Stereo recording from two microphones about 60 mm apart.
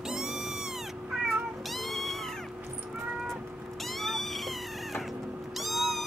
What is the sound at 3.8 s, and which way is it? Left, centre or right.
Cat, centre.